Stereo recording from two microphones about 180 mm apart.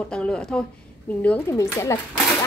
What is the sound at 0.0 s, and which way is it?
A woman's voice, 5° left (ahead or behind).